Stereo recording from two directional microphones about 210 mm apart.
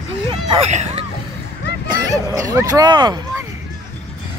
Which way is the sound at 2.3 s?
15° right (ahead or behind).